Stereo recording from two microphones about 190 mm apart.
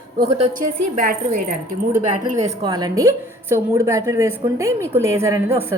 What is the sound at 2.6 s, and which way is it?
A woman's voice, 20° right (ahead or behind).